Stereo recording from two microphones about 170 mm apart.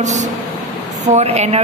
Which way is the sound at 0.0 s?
45° right (ahead or behind).